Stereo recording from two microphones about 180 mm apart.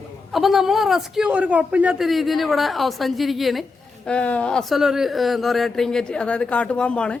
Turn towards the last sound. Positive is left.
turn(degrees=5)  # may be behind; listen again after turning